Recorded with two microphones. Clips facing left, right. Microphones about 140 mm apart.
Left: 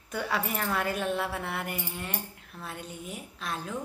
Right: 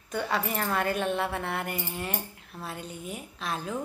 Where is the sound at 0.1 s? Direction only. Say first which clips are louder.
Right 2 dB; 5° left (ahead or behind).